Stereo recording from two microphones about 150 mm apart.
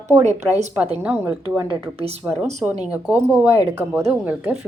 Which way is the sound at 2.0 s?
40° right (ahead or behind).